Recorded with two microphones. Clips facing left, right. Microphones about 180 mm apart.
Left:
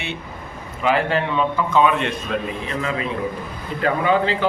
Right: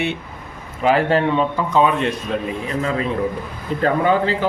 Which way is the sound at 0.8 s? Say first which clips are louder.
Right 4 dB; 40° right (ahead or behind).